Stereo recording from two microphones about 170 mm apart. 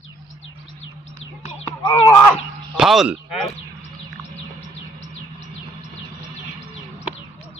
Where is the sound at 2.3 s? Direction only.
Centre (ahead or behind).